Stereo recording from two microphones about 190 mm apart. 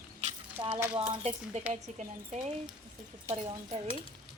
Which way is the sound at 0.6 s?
20° right (ahead or behind).